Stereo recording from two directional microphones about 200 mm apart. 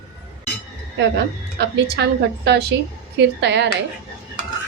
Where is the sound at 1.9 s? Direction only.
55° right (ahead or behind).